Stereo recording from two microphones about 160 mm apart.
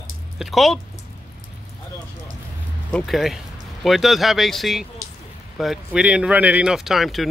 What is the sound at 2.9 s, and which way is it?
Speech, centre (ahead or behind).